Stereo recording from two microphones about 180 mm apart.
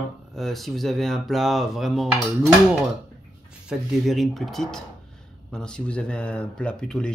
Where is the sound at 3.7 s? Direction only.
Centre (ahead or behind).